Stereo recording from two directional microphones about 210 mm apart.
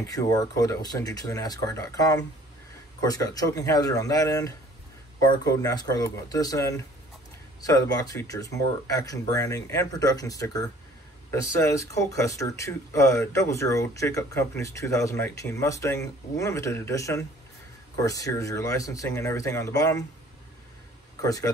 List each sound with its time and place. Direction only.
0.1 s speech: 15° left (ahead or behind)
21.2 s speech: 15° left (ahead or behind)